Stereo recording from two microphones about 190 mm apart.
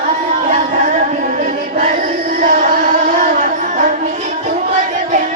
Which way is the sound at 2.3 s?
45° right (ahead or behind).